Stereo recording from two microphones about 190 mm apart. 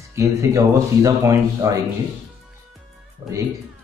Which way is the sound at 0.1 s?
15° right (ahead or behind).